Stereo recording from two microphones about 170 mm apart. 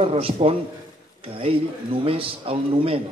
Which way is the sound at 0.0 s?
35° right (ahead or behind).